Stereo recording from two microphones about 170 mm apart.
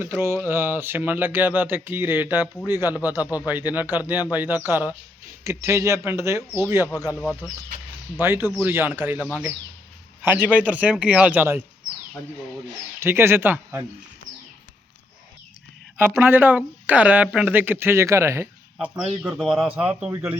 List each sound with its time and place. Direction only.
0.0 s speech: 15° right (ahead or behind)
8.2 s speech: 15° right (ahead or behind)
13.0 s speech: 15° right (ahead or behind)
16.0 s speech: 15° right (ahead or behind)